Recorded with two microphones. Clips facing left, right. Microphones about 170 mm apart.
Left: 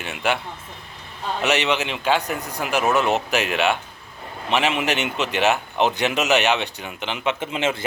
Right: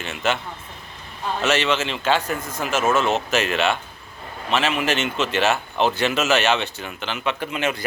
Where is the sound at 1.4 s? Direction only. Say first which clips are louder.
Even; 15° left (ahead or behind).